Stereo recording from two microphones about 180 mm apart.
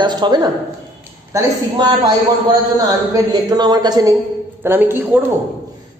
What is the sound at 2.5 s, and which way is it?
A man's voice, 20° right (ahead or behind).